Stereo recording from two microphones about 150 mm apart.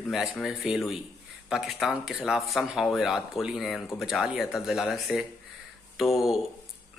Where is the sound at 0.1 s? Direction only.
5° right (ahead or behind).